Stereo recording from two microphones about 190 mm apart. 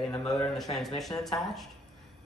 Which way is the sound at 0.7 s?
25° left (ahead or behind).